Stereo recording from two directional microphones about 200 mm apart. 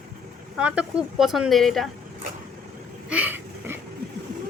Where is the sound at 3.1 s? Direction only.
10° right (ahead or behind).